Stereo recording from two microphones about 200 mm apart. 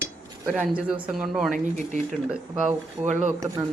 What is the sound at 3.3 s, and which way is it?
Speech, 15° right (ahead or behind).